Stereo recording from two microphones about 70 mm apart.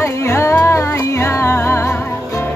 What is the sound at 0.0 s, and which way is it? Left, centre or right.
Music, left.